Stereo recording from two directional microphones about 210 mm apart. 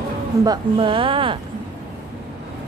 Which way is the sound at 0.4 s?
20° right (ahead or behind).